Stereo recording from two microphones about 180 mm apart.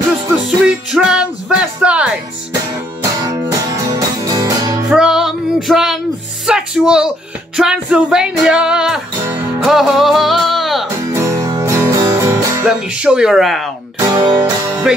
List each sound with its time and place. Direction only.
0.7 s music: 5° right (ahead or behind)
2.7 s music: 20° right (ahead or behind)
4.9 s music: 5° right (ahead or behind)
11.0 s music: 15° right (ahead or behind)
12.6 s speech: 5° right (ahead or behind)
13.9 s speech: 20° right (ahead or behind)
14.9 s speech: 5° right (ahead or behind)